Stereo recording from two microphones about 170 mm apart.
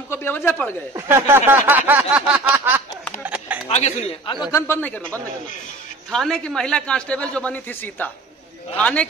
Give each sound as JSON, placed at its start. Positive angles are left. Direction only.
{"t": 0.1, "sound": "a man's voice", "side_deg": 15}
{"t": 0.9, "sound": "a sound", "side_deg": -15}
{"t": 3.6, "sound": "speech", "side_deg": 40}
{"t": 4.5, "sound": "a man's voice", "side_deg": 15}